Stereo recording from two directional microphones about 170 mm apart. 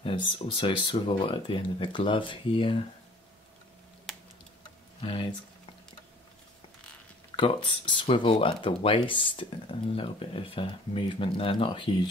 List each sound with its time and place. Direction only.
0.0 s speech: 30° left (ahead or behind)
4.1 s typing: centre (ahead or behind)
5.0 s speech: 30° left (ahead or behind)
7.3 s speech: 30° left (ahead or behind)